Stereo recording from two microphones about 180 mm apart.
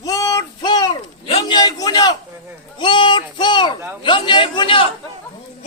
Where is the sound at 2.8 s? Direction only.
30° left (ahead or behind).